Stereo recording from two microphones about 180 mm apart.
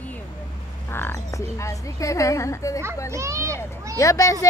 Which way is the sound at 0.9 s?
15° left (ahead or behind).